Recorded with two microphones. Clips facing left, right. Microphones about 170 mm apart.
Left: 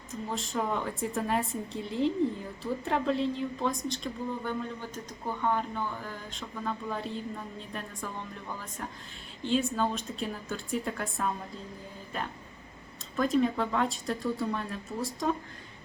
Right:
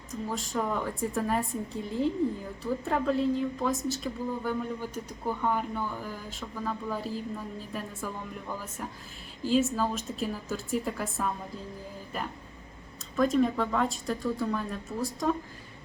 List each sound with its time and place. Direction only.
0.1 s a woman's voice: centre (ahead or behind)
9.4 s a woman's voice: 5° right (ahead or behind)
13.1 s a woman's voice: centre (ahead or behind)